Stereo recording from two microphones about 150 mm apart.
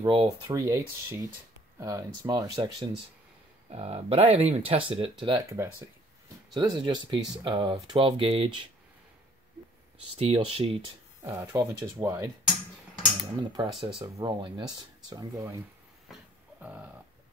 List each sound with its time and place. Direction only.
0.0 s speech: 30° right (ahead or behind)
3.7 s speech: 40° right (ahead or behind)
10.1 s speech: 40° right (ahead or behind)
11.2 s speech: 20° right (ahead or behind)
13.4 s speech: 30° right (ahead or behind)
13.7 s speech: centre (ahead or behind)
13.9 s speech: 30° right (ahead or behind)
16.6 s a sound: 10° right (ahead or behind)